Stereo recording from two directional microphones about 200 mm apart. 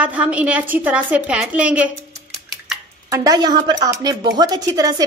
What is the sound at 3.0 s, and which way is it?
A woman's voice, 20° right (ahead or behind).